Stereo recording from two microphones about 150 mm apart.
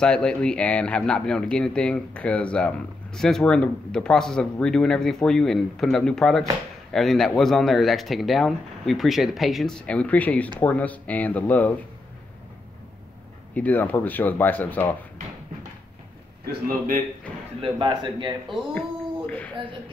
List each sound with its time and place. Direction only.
0.0 s speech: 5° left (ahead or behind)
13.6 s speech: 10° left (ahead or behind)
16.6 s a man's voice: 70° right (ahead or behind)
17.6 s a man's voice: 30° right (ahead or behind)
18.7 s a sound: 10° left (ahead or behind)